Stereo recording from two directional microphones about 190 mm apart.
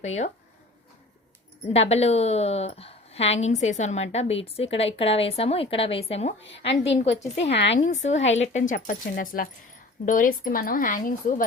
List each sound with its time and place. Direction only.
0.0 s a woman's voice: 35° left (ahead or behind)
1.7 s a woman's voice: 35° left (ahead or behind)
6.4 s a woman's voice: 70° left (ahead or behind)
7.0 s a woman's voice: 35° left (ahead or behind)
7.5 s speech: 65° left (ahead or behind)
8.2 s speech: 80° left
8.5 s a woman's voice: 45° left (ahead or behind)